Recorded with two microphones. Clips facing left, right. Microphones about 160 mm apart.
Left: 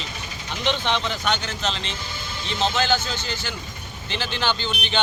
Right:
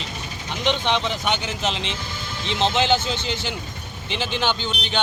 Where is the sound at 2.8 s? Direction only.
25° right (ahead or behind).